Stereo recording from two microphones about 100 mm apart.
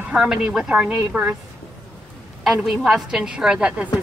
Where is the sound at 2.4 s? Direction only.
Centre (ahead or behind).